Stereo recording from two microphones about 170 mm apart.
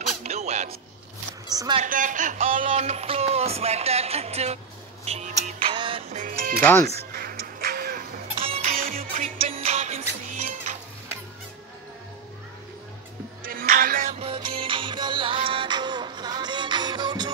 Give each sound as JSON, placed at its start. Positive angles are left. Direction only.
{"t": 0.2, "sound": "music", "side_deg": -40}
{"t": 1.5, "sound": "a woman's voice", "side_deg": -20}
{"t": 1.8, "sound": "a woman's voice", "side_deg": -50}
{"t": 2.5, "sound": "music", "side_deg": -35}
{"t": 5.0, "sound": "a woman's voice", "side_deg": -40}
{"t": 5.7, "sound": "music", "side_deg": -30}
{"t": 6.1, "sound": "speech", "side_deg": -50}
{"t": 6.6, "sound": "speech", "side_deg": 15}
{"t": 7.1, "sound": "music", "side_deg": -60}
{"t": 8.4, "sound": "music", "side_deg": -35}
{"t": 8.7, "sound": "music", "side_deg": -55}
{"t": 9.5, "sound": "music", "side_deg": -40}
{"t": 13.4, "sound": "music", "side_deg": -55}
{"t": 14.1, "sound": "music", "side_deg": -30}